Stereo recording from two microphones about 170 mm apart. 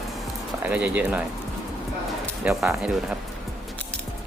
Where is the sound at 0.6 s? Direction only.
10° right (ahead or behind).